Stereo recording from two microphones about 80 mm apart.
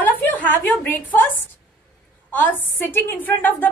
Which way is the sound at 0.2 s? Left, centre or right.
Left.